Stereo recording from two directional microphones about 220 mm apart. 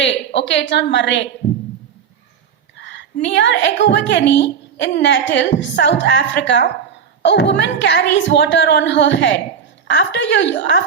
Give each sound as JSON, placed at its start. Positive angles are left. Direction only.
{"t": 0.3, "sound": "a woman's voice", "side_deg": 55}
{"t": 2.7, "sound": "a woman's voice", "side_deg": 55}